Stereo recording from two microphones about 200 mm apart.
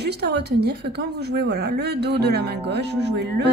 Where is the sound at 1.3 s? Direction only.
55° right (ahead or behind).